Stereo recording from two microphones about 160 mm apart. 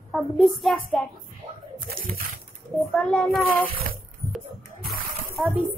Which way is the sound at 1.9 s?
65° right (ahead or behind).